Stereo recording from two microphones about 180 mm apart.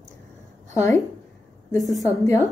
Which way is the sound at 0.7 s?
15° left (ahead or behind).